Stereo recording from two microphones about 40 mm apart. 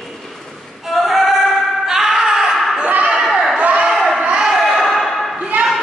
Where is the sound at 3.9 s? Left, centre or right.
Centre.